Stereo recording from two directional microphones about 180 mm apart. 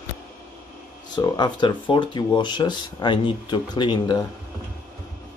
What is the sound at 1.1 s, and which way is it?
Speech, 25° left (ahead or behind).